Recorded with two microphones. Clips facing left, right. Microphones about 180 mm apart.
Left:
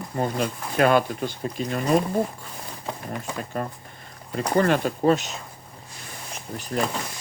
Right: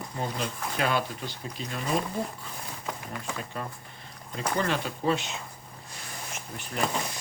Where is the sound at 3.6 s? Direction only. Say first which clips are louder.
Left 7 dB; 50° left (ahead or behind).